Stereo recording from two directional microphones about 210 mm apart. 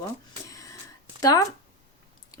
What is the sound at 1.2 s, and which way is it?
Speech, 15° left (ahead or behind).